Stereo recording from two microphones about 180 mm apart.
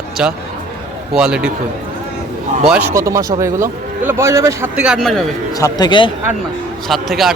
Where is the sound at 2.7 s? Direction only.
10° right (ahead or behind).